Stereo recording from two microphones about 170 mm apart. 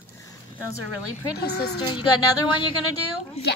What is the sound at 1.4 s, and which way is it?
Speech, 70° left (ahead or behind).